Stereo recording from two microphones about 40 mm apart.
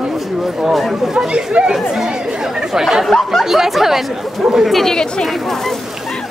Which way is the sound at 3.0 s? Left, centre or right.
Centre.